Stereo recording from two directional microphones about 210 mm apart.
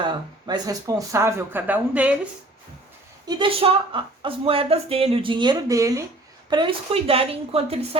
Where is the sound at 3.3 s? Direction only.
25° right (ahead or behind).